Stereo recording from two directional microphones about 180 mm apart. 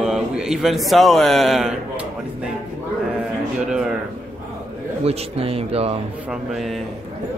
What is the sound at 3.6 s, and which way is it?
Speech, 5° right (ahead or behind).